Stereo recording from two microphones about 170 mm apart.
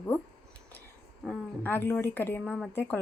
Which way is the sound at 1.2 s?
10° left (ahead or behind).